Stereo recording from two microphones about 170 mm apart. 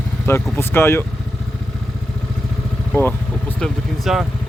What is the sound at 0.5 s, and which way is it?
Speech, 15° left (ahead or behind).